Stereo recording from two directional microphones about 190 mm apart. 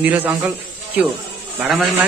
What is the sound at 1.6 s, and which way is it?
Speech, centre (ahead or behind).